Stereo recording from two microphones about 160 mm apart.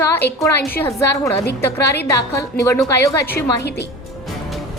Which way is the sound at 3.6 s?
90° left.